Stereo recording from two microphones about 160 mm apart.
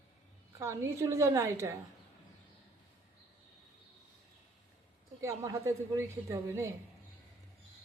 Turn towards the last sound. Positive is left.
turn(degrees=-15)  # may be behind; listen again after turning